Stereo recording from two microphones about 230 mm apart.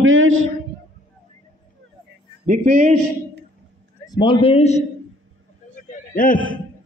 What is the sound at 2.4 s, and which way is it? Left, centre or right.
A man's voice, right.